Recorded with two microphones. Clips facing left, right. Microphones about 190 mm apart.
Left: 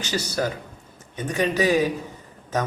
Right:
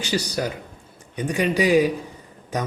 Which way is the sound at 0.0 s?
15° right (ahead or behind).